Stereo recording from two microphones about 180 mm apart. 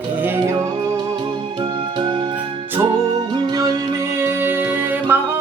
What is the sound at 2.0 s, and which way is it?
Music, 25° right (ahead or behind).